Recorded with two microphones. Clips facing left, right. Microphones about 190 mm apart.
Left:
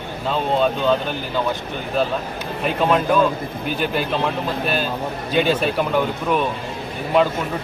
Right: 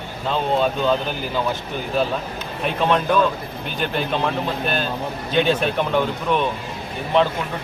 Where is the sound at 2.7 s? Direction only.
Centre (ahead or behind).